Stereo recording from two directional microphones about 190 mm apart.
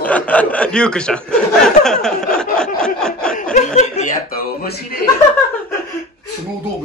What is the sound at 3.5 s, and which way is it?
Speech, 40° left (ahead or behind).